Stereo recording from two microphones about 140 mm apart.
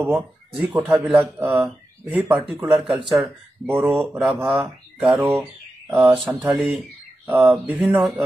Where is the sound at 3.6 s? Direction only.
15° right (ahead or behind).